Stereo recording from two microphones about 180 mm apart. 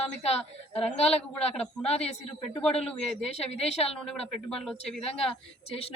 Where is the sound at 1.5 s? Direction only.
35° left (ahead or behind).